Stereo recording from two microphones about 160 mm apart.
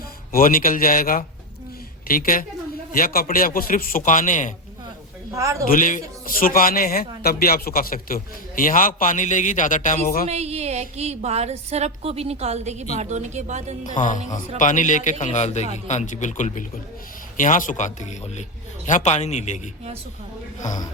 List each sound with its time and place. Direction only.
0.3 s a man's voice: 60° left (ahead or behind)
5.3 s a man's voice: 20° right (ahead or behind)
5.6 s a man's voice: 55° left (ahead or behind)
10.2 s a woman's voice: 40° right (ahead or behind)
14.6 s a man's voice: 50° left (ahead or behind)
20.6 s a man's voice: 50° left (ahead or behind)